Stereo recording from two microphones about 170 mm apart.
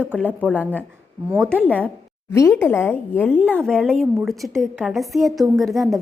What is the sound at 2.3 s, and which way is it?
A woman's voice, 15° left (ahead or behind).